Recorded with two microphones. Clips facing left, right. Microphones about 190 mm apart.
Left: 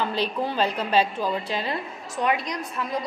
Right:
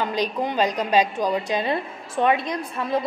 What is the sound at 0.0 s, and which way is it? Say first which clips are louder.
A woman's voice: right 2 dB; 15° right (ahead or behind).